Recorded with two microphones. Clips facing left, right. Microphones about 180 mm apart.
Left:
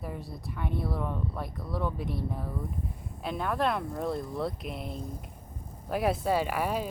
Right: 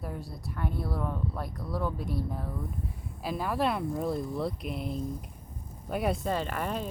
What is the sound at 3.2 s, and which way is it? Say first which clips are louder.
Speech: even; 5° right (ahead or behind).